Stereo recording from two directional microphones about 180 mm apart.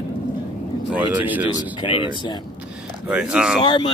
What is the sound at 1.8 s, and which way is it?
Speech, 25° left (ahead or behind).